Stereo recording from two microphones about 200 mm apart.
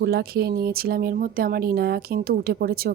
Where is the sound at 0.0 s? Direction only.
55° right (ahead or behind).